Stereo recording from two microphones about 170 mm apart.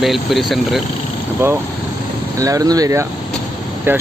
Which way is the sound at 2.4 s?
20° right (ahead or behind).